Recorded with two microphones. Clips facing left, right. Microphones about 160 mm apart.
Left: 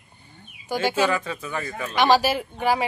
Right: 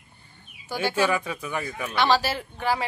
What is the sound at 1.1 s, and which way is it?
Speech, 10° right (ahead or behind).